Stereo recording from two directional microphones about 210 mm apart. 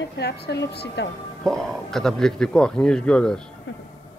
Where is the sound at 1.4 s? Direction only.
5° left (ahead or behind).